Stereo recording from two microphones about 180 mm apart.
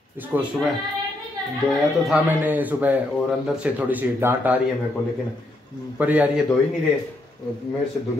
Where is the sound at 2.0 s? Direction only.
5° right (ahead or behind).